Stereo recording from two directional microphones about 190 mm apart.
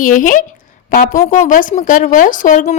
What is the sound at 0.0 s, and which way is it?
A woman's voice, 45° left (ahead or behind).